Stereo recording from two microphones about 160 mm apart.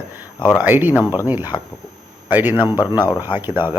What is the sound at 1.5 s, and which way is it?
Speech, 25° left (ahead or behind).